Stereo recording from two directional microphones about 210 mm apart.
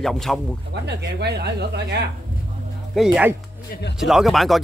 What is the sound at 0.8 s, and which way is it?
Speech, 50° right (ahead or behind).